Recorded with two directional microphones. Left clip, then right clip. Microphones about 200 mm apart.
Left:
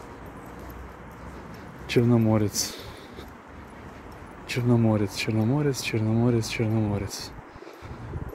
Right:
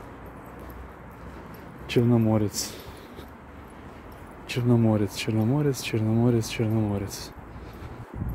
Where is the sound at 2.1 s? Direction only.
5° right (ahead or behind).